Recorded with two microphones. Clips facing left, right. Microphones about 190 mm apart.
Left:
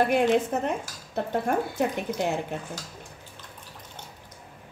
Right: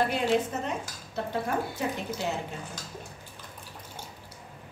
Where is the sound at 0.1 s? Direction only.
55° left (ahead or behind).